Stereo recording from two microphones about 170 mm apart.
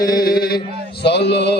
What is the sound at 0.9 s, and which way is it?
Music, 75° left (ahead or behind).